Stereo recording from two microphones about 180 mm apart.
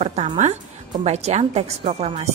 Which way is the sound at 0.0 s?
35° right (ahead or behind).